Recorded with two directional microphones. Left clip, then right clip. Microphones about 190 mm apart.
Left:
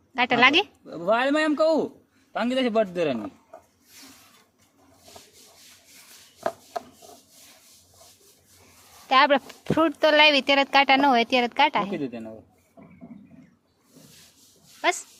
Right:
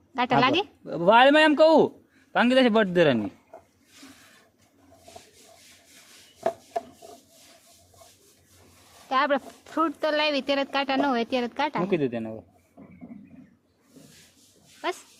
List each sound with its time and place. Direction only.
0.1 s speech: 5° right (ahead or behind)
0.9 s a man's voice: 50° right (ahead or behind)
9.0 s speech: 10° left (ahead or behind)
11.9 s a man's voice: 45° right (ahead or behind)
14.8 s speech: 5° left (ahead or behind)